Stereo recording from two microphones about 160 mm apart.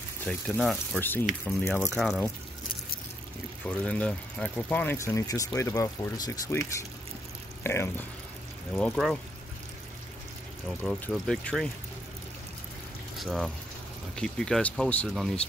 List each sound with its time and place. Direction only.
0.2 s speech: centre (ahead or behind)
0.9 s speech: 10° left (ahead or behind)
3.6 s speech: 5° left (ahead or behind); by 6.6 s 25° left (ahead or behind)
7.6 s speech: 15° left (ahead or behind)
8.7 s speech: 5° left (ahead or behind)
10.8 s speech: 5° left (ahead or behind)
13.2 s speech: centre (ahead or behind)